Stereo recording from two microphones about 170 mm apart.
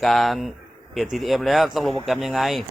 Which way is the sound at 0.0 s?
Centre (ahead or behind).